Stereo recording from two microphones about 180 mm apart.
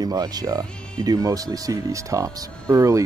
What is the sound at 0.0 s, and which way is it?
Speech, 20° right (ahead or behind).